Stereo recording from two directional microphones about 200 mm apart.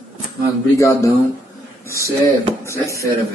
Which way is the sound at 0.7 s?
15° left (ahead or behind).